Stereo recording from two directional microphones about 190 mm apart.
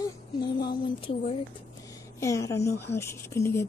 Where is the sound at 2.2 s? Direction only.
15° left (ahead or behind).